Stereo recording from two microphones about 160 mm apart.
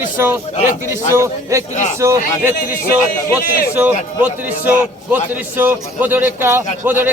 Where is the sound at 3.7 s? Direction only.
10° right (ahead or behind).